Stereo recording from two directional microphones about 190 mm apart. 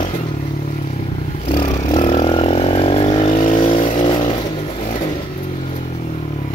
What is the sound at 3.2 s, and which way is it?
Vehicle, 40° left (ahead or behind).